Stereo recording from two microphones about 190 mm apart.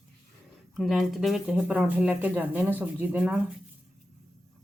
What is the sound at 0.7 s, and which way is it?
Speech, centre (ahead or behind).